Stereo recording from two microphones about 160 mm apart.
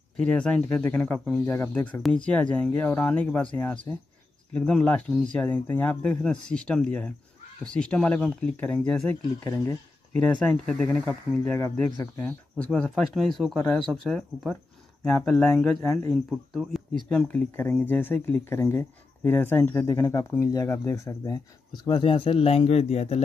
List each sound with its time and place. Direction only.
0.2 s speech: 5° left (ahead or behind)
10.4 s speech: 5° left (ahead or behind)
16.3 s speech: centre (ahead or behind); by 23.2 s 40° left (ahead or behind)